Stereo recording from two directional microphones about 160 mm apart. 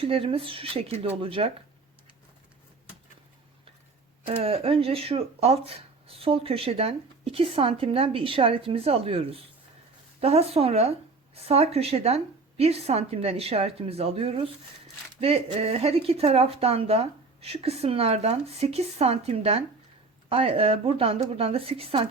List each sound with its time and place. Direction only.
0.0 s speech: 35° right (ahead or behind)
4.3 s speech: 40° right (ahead or behind)